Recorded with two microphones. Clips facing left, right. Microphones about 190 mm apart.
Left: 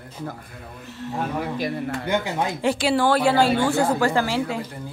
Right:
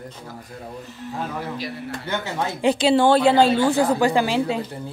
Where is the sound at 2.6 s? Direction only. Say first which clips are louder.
Right 5 dB; 20° right (ahead or behind).